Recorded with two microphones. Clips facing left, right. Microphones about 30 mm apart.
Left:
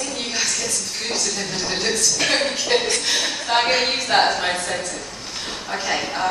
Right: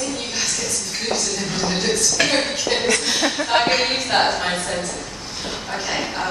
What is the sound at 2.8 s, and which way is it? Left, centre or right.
A woman's voice, centre.